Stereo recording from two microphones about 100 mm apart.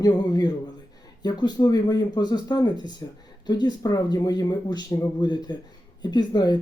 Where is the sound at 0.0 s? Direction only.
40° left (ahead or behind).